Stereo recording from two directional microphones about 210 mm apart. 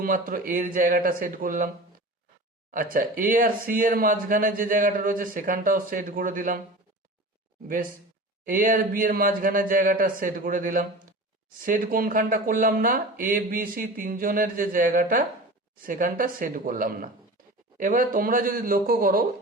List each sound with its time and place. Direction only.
0.0 s speech: 40° right (ahead or behind)
2.7 s speech: 40° right (ahead or behind)
8.4 s speech: 40° right (ahead or behind)